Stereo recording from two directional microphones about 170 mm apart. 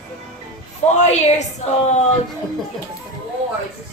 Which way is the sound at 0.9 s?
40° left (ahead or behind).